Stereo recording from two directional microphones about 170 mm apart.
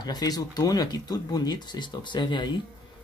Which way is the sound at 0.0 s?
25° left (ahead or behind).